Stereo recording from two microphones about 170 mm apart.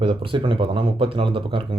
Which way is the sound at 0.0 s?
30° right (ahead or behind).